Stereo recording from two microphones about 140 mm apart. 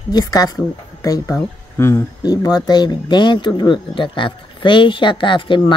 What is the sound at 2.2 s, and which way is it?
Speech, 30° left (ahead or behind).